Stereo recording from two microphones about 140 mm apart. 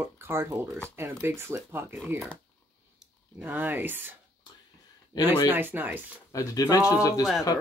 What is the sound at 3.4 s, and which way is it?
Speech, 15° right (ahead or behind).